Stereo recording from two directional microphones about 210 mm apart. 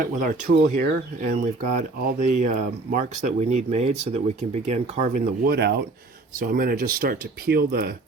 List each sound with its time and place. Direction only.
0.0 s speech: 40° right (ahead or behind)